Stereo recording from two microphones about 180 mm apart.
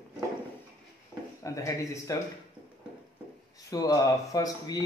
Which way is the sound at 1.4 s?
15° left (ahead or behind).